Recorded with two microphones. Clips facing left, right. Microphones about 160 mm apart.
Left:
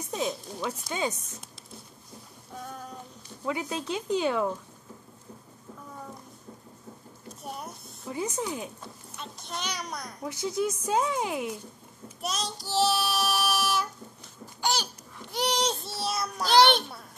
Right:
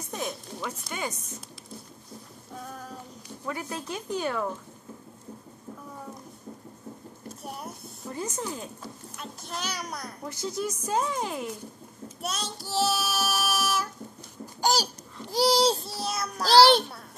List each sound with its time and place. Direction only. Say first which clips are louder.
0.1 s speech: left 3 dB; 15° left (ahead or behind)
2.5 s a sound: even; centre (ahead or behind)
3.4 s speech: left 3 dB; 15° left (ahead or behind)
7.4 s a sound: even; 5° right (ahead or behind)
8.1 s speech: left 2 dB; 15° left (ahead or behind)
9.1 s a child's voice: even; 5° right (ahead or behind)
10.2 s speech: left 3 dB; 15° left (ahead or behind)
12.2 s child singing: left 1 dB; centre (ahead or behind)
14.6 s babbling: right 4 dB; 40° right (ahead or behind)
15.3 s a sound: right 6 dB; 35° right (ahead or behind)
15.8 s child singing: left 1 dB; centre (ahead or behind)
16.4 s a child's voice: right 3 dB; 35° right (ahead or behind)